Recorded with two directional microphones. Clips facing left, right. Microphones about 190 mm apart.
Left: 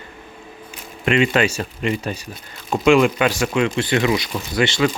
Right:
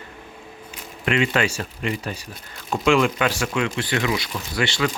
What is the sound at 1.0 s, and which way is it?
Speech, 25° left (ahead or behind).